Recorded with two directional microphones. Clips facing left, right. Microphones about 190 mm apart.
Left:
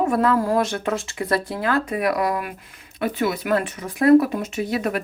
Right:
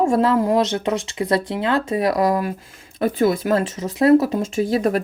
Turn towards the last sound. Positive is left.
turn(degrees=-35)  # may be behind; listen again after turning